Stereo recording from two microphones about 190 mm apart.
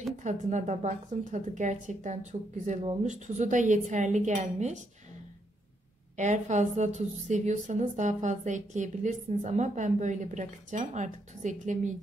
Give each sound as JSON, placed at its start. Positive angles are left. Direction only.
{"t": 0.2, "sound": "a woman's voice", "side_deg": -40}
{"t": 6.1, "sound": "a woman's voice", "side_deg": -40}